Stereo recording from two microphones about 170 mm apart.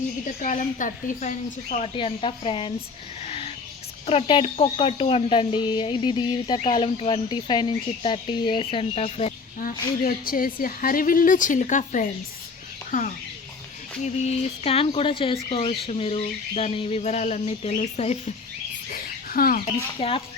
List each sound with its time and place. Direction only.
0.4 s a woman's voice: 50° left (ahead or behind)
2.0 s speech: 35° left (ahead or behind)
3.2 s music: 35° left (ahead or behind)
4.0 s speech: 35° left (ahead or behind)
10.0 s a woman's voice: 55° left (ahead or behind)
14.0 s speech: 35° left (ahead or behind)
18.9 s a sound: 60° left (ahead or behind)
20.0 s speech: 35° left (ahead or behind)